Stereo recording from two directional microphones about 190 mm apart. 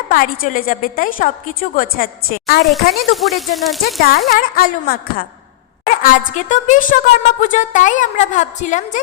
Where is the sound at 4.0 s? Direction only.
55° left (ahead or behind).